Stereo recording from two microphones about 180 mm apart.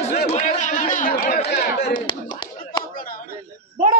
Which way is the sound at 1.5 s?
65° left (ahead or behind).